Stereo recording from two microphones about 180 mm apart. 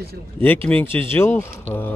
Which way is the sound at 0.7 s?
10° left (ahead or behind).